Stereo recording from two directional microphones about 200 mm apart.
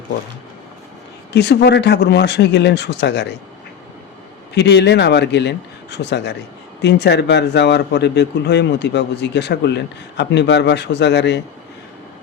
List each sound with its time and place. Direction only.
1.3 s a man's voice: 55° left (ahead or behind)
4.5 s a man's voice: 55° left (ahead or behind)